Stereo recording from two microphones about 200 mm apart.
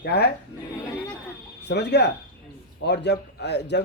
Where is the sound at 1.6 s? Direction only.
60° left (ahead or behind).